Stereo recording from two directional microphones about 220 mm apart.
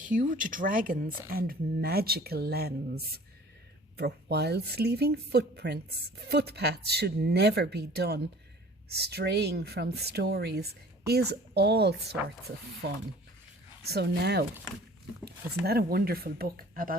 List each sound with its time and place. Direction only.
0.1 s speech: 35° right (ahead or behind)
15.6 s speech: 45° right (ahead or behind)